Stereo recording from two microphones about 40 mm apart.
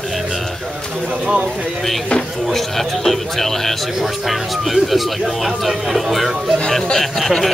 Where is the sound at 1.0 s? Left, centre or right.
Right.